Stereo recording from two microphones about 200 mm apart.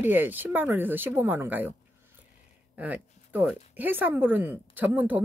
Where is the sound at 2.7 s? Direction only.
10° right (ahead or behind).